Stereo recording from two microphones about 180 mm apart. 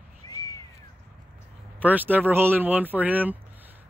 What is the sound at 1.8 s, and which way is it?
Speech, 10° right (ahead or behind).